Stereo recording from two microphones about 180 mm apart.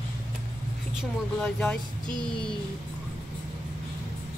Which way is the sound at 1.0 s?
5° left (ahead or behind).